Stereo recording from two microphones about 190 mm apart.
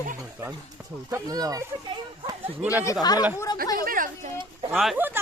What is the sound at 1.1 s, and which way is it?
Speech, 20° right (ahead or behind).